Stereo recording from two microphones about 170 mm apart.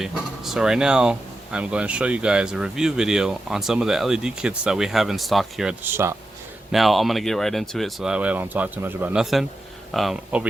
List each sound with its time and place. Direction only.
0.0 s speech: centre (ahead or behind)
5.8 s speech: 15° right (ahead or behind)
6.7 s speech: centre (ahead or behind)